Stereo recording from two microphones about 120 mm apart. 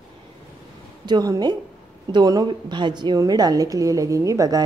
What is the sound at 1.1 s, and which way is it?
A woman's voice, 35° right (ahead or behind).